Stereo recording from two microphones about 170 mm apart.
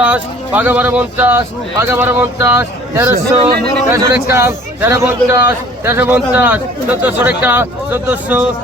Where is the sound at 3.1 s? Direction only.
60° right (ahead or behind).